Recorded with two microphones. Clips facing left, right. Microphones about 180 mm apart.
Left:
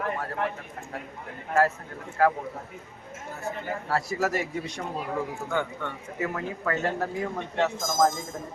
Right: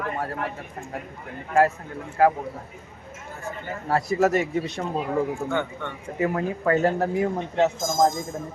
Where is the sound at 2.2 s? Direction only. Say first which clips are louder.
Right 4 dB; 15° right (ahead or behind).